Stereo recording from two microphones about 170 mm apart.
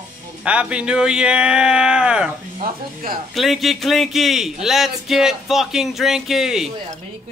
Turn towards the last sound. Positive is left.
turn(degrees=0)  # may be behind; listen again after turning